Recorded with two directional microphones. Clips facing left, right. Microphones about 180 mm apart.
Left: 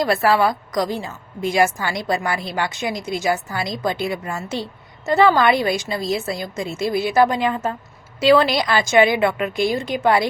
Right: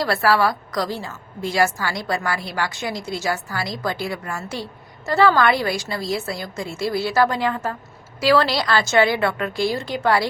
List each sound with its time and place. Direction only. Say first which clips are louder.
0.0 s a woman's voice: left 2 dB; 20° left (ahead or behind)